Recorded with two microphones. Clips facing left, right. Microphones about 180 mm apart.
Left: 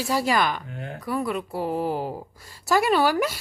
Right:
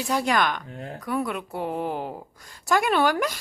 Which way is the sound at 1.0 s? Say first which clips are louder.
Left 1 dB; centre (ahead or behind).